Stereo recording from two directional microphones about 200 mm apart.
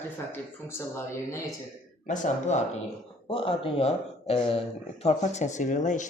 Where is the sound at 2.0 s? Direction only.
40° left (ahead or behind).